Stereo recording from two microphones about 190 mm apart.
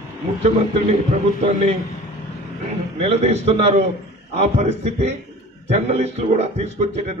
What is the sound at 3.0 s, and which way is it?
A man's voice, 35° right (ahead or behind).